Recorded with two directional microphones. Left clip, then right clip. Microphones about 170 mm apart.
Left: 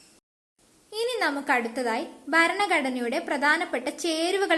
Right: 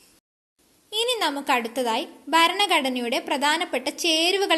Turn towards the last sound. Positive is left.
turn(degrees=-30)  # may be behind; listen again after turning